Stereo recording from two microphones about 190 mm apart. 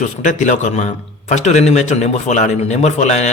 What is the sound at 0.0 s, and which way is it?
A man's voice, 40° left (ahead or behind).